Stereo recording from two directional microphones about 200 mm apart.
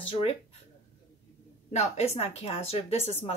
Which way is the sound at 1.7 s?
35° left (ahead or behind).